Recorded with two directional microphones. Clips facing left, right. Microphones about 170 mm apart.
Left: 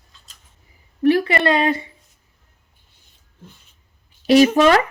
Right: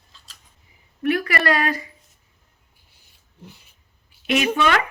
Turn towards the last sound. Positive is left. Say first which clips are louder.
# left 8 dB
turn(degrees=35)  # may be behind; listen again after turning